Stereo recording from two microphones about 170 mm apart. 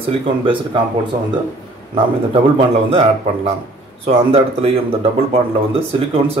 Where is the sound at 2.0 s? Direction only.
30° right (ahead or behind).